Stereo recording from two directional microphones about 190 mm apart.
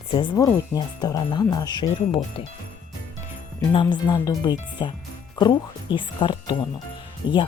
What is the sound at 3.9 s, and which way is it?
Speech, 20° left (ahead or behind).